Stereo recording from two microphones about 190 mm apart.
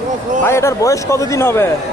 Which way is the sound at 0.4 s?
15° left (ahead or behind).